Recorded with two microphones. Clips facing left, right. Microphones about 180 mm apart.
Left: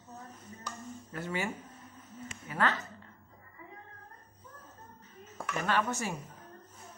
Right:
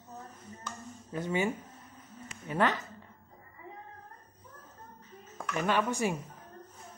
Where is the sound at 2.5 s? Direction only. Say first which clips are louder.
Right 3 dB; 20° right (ahead or behind).